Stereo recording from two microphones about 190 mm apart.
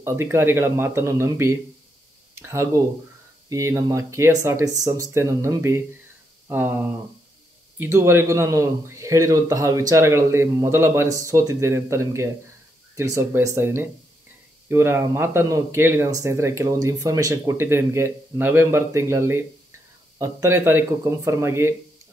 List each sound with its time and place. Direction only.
0.0 s speech: 15° right (ahead or behind)